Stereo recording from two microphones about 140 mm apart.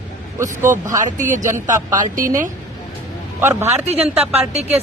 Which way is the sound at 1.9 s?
70° right (ahead or behind).